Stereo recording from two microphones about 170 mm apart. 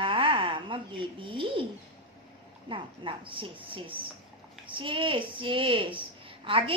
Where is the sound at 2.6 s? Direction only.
30° right (ahead or behind).